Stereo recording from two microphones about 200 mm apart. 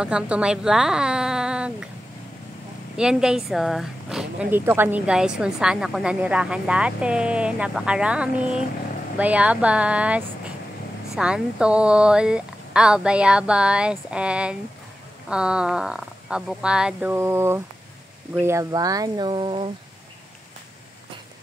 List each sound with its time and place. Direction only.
0.0 s speech: 5° right (ahead or behind)
3.0 s a woman's voice: 5° right (ahead or behind); by 19.7 s 25° right (ahead or behind)